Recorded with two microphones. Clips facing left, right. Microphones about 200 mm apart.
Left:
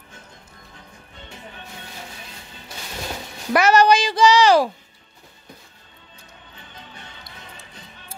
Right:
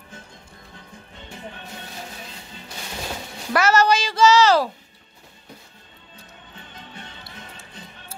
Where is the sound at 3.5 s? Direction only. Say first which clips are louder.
Left 3 dB; 15° left (ahead or behind).